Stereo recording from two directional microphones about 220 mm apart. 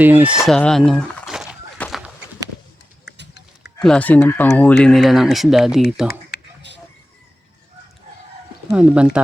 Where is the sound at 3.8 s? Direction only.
5° left (ahead or behind).